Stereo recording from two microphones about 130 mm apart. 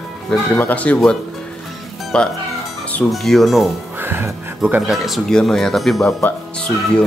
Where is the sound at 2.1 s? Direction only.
10° left (ahead or behind).